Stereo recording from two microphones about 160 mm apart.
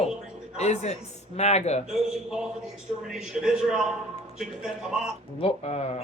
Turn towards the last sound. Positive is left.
turn(degrees=40)  # may be behind; listen again after turning